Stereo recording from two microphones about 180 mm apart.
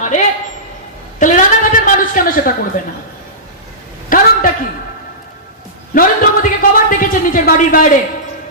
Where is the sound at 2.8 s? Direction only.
45° left (ahead or behind).